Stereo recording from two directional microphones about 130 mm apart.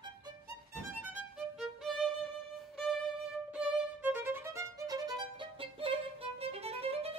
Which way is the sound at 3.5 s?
10° right (ahead or behind).